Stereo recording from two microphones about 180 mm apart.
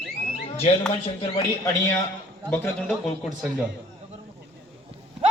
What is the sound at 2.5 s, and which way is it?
Speech, 10° left (ahead or behind).